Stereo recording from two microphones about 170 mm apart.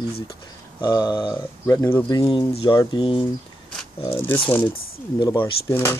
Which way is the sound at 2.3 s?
30° left (ahead or behind).